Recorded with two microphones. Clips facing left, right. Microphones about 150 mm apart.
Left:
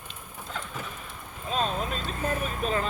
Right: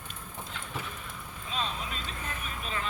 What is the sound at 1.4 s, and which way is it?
Speech, 45° left (ahead or behind).